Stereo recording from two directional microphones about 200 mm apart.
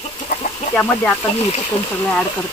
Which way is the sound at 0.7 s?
5° left (ahead or behind).